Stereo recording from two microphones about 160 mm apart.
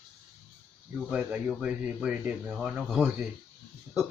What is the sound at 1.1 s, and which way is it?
A man's voice, 5° right (ahead or behind).